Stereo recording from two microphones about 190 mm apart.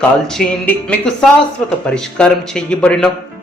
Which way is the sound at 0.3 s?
10° left (ahead or behind).